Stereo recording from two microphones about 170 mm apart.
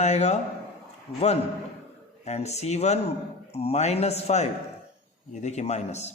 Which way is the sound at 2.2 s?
40° left (ahead or behind).